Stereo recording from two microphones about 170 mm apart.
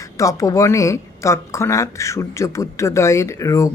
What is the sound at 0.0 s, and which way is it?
Speech, 20° left (ahead or behind).